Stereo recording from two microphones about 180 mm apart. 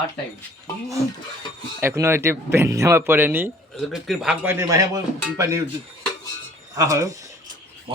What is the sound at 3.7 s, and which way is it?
Speech, centre (ahead or behind).